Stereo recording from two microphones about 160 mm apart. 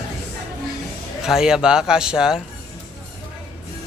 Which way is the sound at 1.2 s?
5° right (ahead or behind).